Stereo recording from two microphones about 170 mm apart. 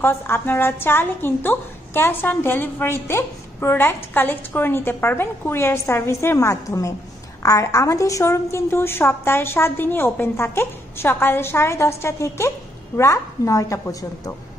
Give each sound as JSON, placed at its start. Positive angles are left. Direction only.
{"t": 0.0, "sound": "a woman's voice", "side_deg": 15}